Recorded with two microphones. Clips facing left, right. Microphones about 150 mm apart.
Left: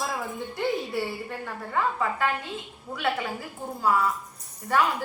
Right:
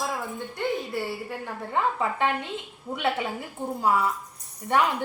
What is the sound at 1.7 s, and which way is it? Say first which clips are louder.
A woman's voice: right 1 dB; 25° right (ahead or behind).